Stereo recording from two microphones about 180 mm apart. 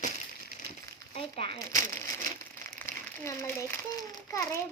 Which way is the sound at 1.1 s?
35° left (ahead or behind).